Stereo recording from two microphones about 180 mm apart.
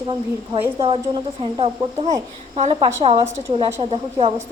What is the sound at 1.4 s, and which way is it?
Speech, 30° right (ahead or behind).